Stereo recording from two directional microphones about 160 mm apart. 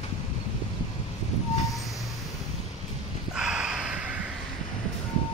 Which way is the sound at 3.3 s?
5° right (ahead or behind).